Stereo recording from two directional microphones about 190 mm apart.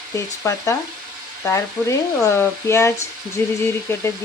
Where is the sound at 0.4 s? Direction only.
15° left (ahead or behind).